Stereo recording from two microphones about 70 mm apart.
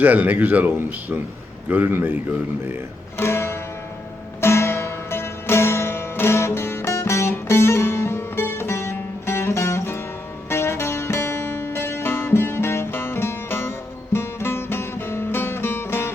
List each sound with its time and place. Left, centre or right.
0.0 s speech: right
3.2 s music: left